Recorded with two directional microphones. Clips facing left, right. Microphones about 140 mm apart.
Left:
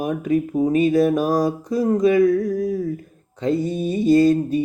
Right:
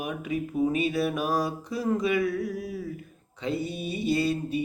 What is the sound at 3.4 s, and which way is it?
Mantra, 45° left (ahead or behind).